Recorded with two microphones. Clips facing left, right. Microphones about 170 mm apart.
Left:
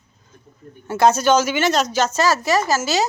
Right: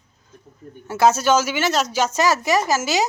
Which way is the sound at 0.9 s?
5° right (ahead or behind).